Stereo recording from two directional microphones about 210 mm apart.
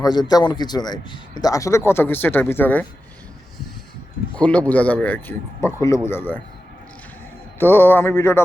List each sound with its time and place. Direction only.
0.0 s a man's voice: 20° left (ahead or behind)
4.4 s a man's voice: 5° left (ahead or behind)
7.6 s a man's voice: 10° left (ahead or behind)